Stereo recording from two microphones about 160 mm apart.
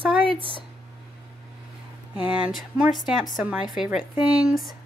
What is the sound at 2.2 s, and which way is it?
Speech, 10° right (ahead or behind).